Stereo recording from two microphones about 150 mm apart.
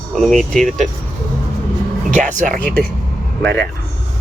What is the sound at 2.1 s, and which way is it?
Speech, 60° right (ahead or behind).